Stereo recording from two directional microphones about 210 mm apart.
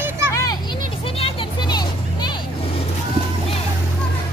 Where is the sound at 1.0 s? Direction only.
25° left (ahead or behind).